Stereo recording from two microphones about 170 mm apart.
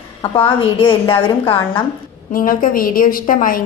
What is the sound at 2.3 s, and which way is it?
A woman's voice, 55° left (ahead or behind).